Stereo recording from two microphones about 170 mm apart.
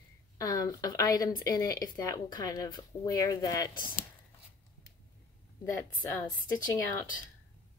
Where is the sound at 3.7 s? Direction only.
55° left (ahead or behind).